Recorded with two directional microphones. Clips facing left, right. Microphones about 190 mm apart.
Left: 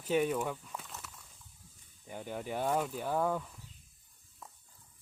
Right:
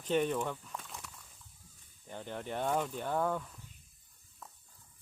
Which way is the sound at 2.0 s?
10° left (ahead or behind).